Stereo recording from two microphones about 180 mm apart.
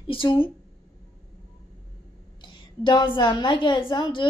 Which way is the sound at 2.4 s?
25° left (ahead or behind).